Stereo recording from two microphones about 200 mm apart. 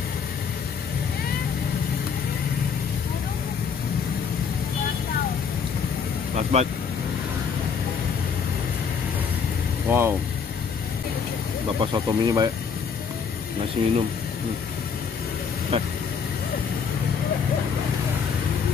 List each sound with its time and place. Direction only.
6.3 s vehicle: 35° right (ahead or behind)
9.8 s speech: 10° right (ahead or behind)
11.8 s speech: 20° right (ahead or behind)
13.8 s speech: 25° right (ahead or behind)
15.7 s speech: 30° right (ahead or behind)